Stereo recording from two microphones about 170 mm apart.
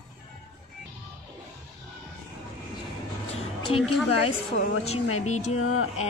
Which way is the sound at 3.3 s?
35° left (ahead or behind).